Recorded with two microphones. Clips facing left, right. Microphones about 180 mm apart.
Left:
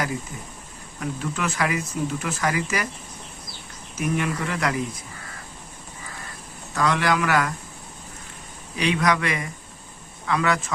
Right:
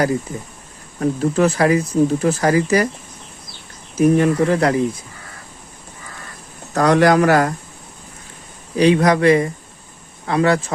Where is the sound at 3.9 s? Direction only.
35° right (ahead or behind).